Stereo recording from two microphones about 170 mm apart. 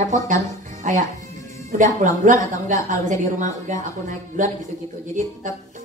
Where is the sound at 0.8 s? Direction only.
50° right (ahead or behind).